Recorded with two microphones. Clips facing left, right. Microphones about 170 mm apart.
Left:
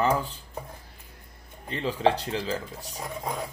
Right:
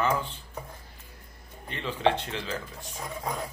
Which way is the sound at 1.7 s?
35° left (ahead or behind).